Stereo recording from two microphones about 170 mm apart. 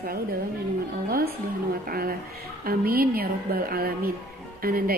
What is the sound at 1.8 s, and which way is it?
A woman's voice, 60° right (ahead or behind).